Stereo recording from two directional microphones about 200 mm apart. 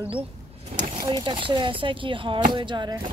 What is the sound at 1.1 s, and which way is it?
Speech, 25° right (ahead or behind).